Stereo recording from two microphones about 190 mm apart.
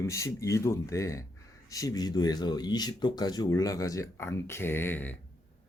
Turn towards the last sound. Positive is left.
turn(degrees=10)  # may be behind; listen again after turning